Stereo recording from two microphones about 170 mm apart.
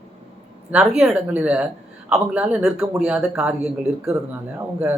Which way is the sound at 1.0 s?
10° right (ahead or behind).